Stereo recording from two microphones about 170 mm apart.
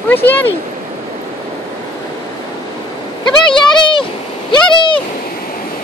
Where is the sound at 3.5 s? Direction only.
30° left (ahead or behind).